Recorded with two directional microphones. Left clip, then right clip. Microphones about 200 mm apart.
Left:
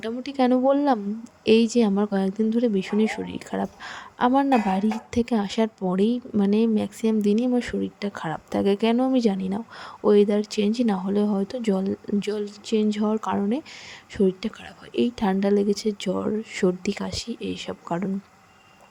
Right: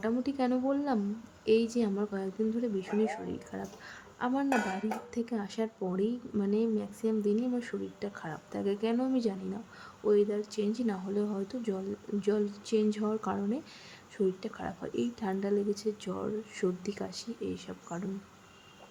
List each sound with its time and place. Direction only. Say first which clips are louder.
0.0 s speech: left 7 dB; 35° left (ahead or behind)